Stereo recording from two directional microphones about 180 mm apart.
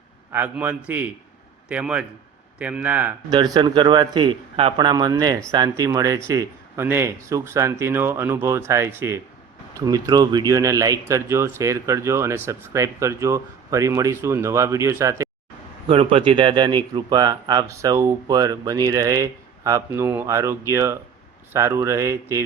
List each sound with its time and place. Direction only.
0.3 s speech: 10° right (ahead or behind)
3.2 s speech: 20° right (ahead or behind)
15.9 s speech: 30° right (ahead or behind); by 22.4 s 15° right (ahead or behind)